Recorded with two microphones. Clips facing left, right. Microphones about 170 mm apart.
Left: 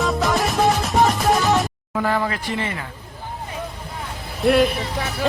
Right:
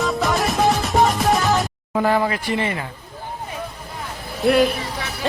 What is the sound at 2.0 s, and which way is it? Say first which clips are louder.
Speech: right 3 dB; 20° right (ahead or behind).